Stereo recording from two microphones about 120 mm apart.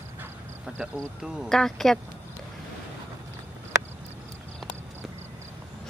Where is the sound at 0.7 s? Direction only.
10° right (ahead or behind).